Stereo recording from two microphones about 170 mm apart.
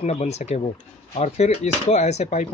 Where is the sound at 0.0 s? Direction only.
40° left (ahead or behind).